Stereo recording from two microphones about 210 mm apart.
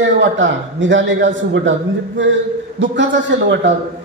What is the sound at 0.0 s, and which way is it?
A man's voice, 60° right (ahead or behind).